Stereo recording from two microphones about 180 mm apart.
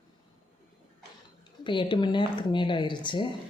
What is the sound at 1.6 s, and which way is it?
Speech, 25° left (ahead or behind).